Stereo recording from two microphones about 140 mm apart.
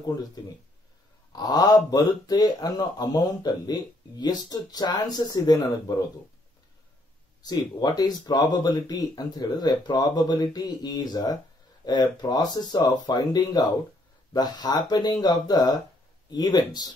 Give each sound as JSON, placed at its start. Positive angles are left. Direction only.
{"t": 0.4, "sound": "speech", "side_deg": 30}
{"t": 7.4, "sound": "speech", "side_deg": 30}